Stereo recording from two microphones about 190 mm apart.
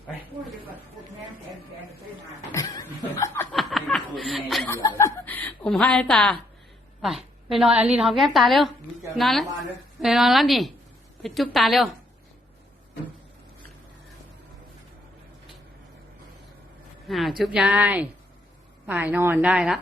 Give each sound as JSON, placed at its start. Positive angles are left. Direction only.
{"t": 2.5, "sound": "chuckle", "side_deg": 15}
{"t": 3.5, "sound": "snicker", "side_deg": 0}
{"t": 4.7, "sound": "chuckle", "side_deg": 15}
{"t": 7.0, "sound": "a woman's voice", "side_deg": 0}
{"t": 17.1, "sound": "a woman's voice", "side_deg": 0}